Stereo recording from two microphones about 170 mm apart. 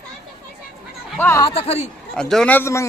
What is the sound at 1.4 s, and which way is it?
Speech, 35° left (ahead or behind).